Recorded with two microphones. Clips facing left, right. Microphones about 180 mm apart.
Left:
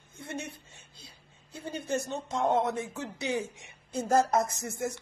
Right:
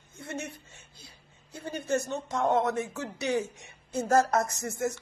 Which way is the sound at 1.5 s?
25° left (ahead or behind).